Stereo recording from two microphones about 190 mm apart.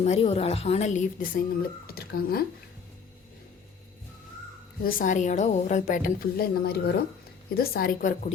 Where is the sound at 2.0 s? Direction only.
50° left (ahead or behind).